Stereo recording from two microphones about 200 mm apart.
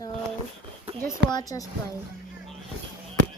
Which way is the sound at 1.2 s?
20° left (ahead or behind).